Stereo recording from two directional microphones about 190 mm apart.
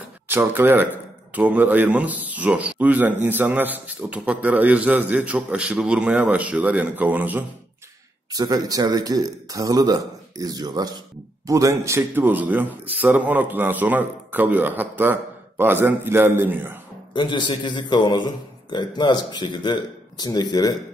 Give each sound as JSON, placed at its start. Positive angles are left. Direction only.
{"t": 0.3, "sound": "a man's voice", "side_deg": -10}
{"t": 17.1, "sound": "a man's voice", "side_deg": 25}